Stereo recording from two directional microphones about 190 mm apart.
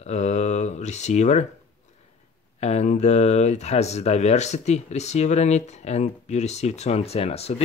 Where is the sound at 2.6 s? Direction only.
35° left (ahead or behind).